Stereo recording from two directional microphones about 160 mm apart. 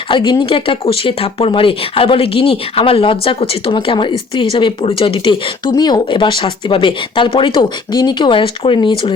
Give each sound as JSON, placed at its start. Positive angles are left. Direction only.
{"t": 0.1, "sound": "speech", "side_deg": 30}